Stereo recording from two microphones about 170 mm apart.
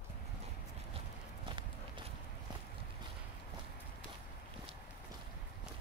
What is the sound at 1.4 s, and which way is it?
Walk, 30° right (ahead or behind).